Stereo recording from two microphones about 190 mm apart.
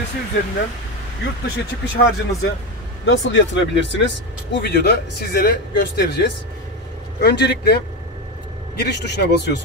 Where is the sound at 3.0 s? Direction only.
80° left; by 7.7 s 60° left (ahead or behind).